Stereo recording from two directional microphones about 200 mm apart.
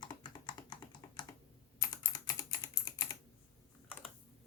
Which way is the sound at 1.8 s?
20° left (ahead or behind).